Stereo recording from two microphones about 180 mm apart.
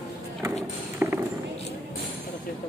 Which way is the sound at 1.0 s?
15° right (ahead or behind).